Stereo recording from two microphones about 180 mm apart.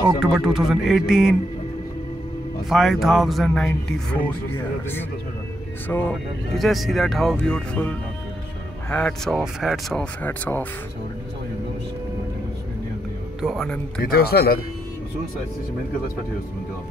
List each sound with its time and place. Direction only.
0.2 s speech: centre (ahead or behind)
2.7 s speech: centre (ahead or behind)
5.9 s speech: 10° left (ahead or behind)
13.4 s speech: centre (ahead or behind)
14.1 s speech: 60° left (ahead or behind)